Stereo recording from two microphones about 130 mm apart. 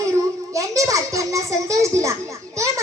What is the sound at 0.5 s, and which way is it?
Children playing, 25° right (ahead or behind).